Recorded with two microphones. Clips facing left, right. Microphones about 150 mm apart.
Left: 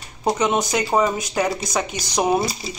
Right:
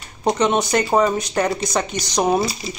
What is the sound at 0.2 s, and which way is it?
Speech, centre (ahead or behind).